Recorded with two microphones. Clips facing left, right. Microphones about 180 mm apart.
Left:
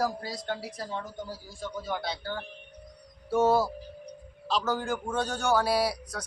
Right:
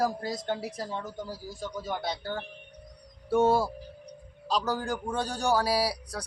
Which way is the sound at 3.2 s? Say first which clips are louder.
Even; 30° right (ahead or behind).